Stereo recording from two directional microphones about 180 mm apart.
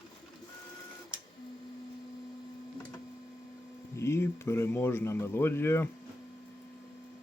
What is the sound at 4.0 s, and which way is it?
Speech, 15° left (ahead or behind).